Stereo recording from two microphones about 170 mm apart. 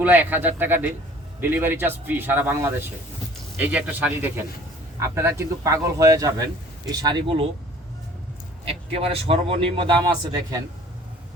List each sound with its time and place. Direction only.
0.0 s a man's voice: 10° right (ahead or behind); by 7.4 s 30° right (ahead or behind)
8.6 s a man's voice: 35° right (ahead or behind)